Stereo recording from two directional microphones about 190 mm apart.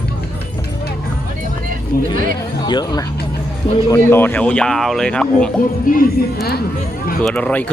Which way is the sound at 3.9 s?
10° left (ahead or behind).